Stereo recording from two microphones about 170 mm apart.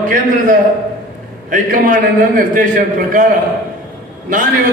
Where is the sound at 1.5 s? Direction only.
50° right (ahead or behind).